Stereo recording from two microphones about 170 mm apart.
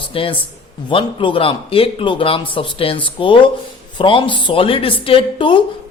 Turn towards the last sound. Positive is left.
turn(degrees=30)  # may be behind; listen again after turning